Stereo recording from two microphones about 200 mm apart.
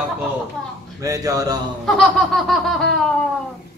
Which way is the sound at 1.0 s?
15° right (ahead or behind).